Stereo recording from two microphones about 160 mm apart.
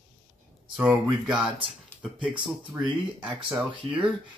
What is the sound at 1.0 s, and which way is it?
Speech, 25° right (ahead or behind).